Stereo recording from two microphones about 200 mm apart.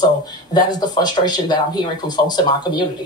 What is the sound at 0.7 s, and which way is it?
Speech, 20° left (ahead or behind).